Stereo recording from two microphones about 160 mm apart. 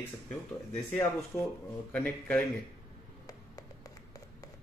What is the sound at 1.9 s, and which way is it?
Speech, 10° left (ahead or behind).